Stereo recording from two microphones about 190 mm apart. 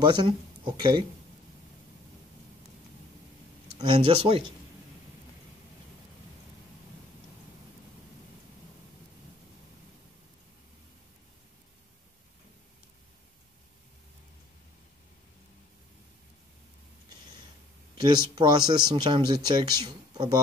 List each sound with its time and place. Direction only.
0.0 s speech: 25° right (ahead or behind)
3.7 s speech: 25° right (ahead or behind)
17.9 s speech: 25° right (ahead or behind)